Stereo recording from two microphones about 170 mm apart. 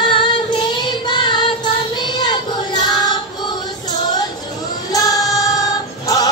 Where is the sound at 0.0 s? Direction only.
30° left (ahead or behind).